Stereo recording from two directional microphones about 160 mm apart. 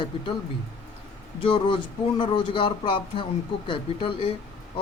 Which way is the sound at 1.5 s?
30° left (ahead or behind).